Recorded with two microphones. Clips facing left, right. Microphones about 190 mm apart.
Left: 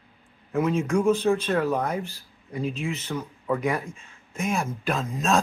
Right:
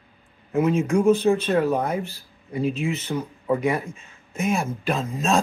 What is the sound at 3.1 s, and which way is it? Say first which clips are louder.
Speech: right 3 dB; 15° right (ahead or behind).